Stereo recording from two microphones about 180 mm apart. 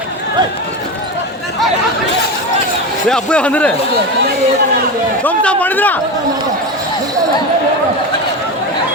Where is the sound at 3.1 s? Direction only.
5° left (ahead or behind).